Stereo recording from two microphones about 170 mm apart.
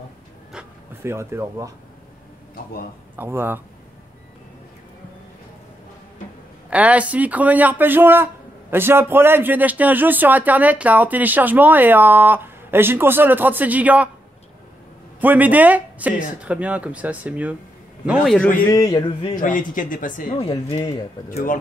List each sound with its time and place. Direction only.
1.0 s speech: 15° right (ahead or behind)
3.2 s speech: 15° right (ahead or behind)
6.7 s speech: 10° right (ahead or behind)
15.1 s a man's voice: 10° right (ahead or behind)
18.7 s a sound: 20° left (ahead or behind)
19.3 s speech: 50° left (ahead or behind)